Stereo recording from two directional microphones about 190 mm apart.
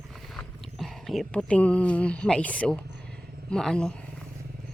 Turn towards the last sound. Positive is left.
turn(degrees=5)  # may be behind; listen again after turning